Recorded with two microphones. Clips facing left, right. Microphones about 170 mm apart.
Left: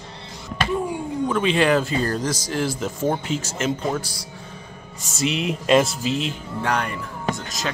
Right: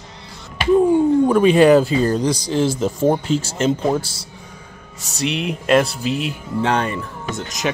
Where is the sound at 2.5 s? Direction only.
30° right (ahead or behind).